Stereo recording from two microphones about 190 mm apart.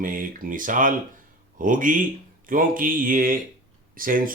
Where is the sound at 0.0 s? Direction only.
45° right (ahead or behind).